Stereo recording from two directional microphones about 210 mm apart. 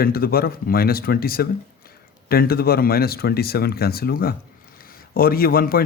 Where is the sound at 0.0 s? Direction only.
45° left (ahead or behind).